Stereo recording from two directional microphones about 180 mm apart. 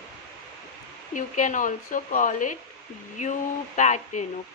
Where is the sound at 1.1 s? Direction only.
45° left (ahead or behind).